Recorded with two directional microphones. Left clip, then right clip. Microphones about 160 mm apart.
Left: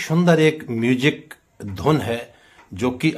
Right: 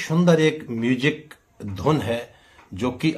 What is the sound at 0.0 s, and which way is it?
Speech, 35° left (ahead or behind).